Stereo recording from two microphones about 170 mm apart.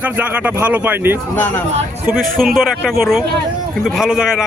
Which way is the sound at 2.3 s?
Centre (ahead or behind).